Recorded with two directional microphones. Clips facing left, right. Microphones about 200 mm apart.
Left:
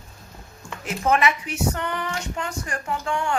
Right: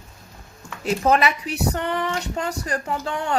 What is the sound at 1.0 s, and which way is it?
Speech, 35° right (ahead or behind).